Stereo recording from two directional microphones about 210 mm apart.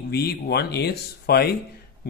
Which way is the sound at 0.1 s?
50° left (ahead or behind).